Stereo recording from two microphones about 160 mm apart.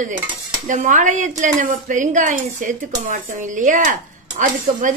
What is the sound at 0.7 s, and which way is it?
A woman's voice, 55° right (ahead or behind).